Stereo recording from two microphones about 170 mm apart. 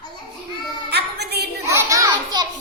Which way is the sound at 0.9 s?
75° right (ahead or behind).